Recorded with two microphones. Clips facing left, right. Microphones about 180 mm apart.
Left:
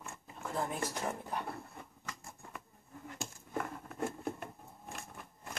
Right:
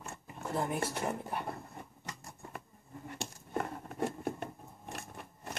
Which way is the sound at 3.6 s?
40° right (ahead or behind).